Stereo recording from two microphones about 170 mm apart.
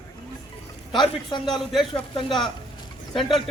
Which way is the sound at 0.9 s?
Centre (ahead or behind).